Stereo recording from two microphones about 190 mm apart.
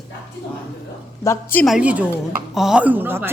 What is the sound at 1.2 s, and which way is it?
Speech, 15° left (ahead or behind).